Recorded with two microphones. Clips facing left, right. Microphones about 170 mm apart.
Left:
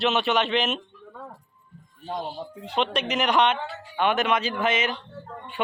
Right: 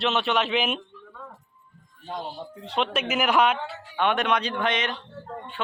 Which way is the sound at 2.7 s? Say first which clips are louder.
Even; centre (ahead or behind).